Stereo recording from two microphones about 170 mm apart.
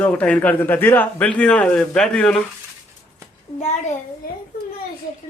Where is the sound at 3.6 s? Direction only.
40° left (ahead or behind).